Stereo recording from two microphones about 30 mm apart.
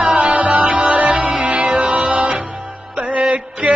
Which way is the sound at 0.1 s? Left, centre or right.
Right.